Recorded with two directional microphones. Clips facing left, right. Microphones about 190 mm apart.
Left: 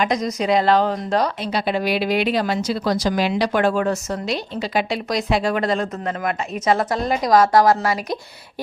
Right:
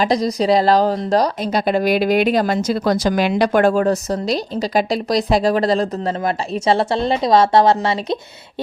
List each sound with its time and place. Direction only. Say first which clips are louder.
0.0 s speech: right 4 dB; 35° right (ahead or behind)